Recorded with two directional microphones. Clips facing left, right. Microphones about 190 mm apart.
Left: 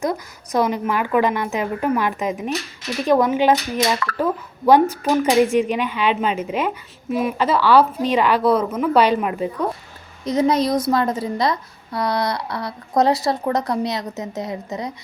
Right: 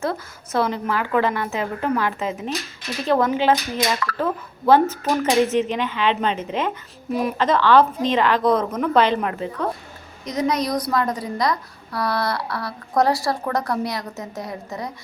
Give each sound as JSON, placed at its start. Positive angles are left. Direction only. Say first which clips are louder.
{"t": 0.0, "sound": "a woman's voice", "louder": "left 2 dB", "side_deg": 15}
{"t": 10.2, "sound": "a woman's voice", "louder": "left 4 dB", "side_deg": 30}